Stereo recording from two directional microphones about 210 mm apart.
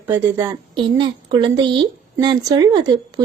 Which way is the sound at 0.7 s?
25° right (ahead or behind).